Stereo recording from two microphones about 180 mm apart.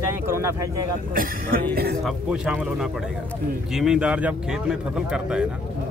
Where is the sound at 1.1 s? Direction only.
50° right (ahead or behind).